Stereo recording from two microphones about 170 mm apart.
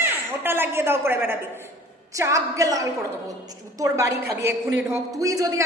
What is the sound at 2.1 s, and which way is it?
A woman's voice, 20° right (ahead or behind).